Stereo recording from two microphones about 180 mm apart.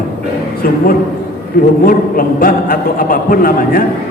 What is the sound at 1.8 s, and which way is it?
A man's voice, 50° left (ahead or behind).